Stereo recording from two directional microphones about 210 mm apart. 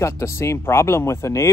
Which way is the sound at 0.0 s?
15° left (ahead or behind).